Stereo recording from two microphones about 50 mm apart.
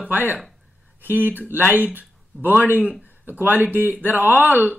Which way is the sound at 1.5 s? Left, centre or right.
Right.